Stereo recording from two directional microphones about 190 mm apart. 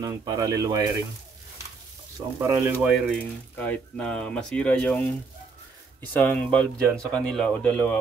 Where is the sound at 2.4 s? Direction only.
10° right (ahead or behind).